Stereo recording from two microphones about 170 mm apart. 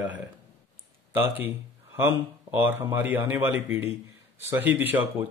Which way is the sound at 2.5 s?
15° right (ahead or behind).